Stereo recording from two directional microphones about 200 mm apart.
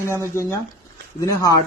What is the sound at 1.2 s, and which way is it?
Speech, 15° left (ahead or behind).